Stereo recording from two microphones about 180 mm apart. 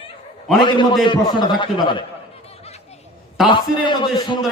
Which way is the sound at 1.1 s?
25° left (ahead or behind).